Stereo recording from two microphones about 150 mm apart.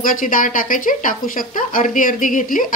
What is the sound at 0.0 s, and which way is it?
Speech, 65° left (ahead or behind).